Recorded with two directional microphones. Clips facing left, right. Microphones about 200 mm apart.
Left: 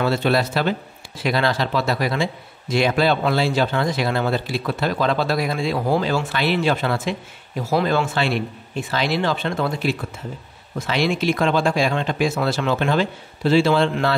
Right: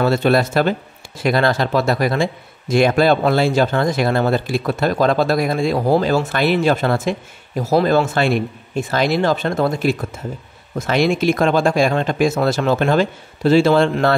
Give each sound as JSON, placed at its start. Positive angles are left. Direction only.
{"t": 0.0, "sound": "speech", "side_deg": -45}